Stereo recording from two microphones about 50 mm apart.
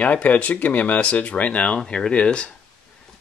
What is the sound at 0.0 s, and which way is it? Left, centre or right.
Speech, left.